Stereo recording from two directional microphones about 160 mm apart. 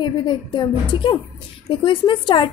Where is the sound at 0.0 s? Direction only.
30° left (ahead or behind).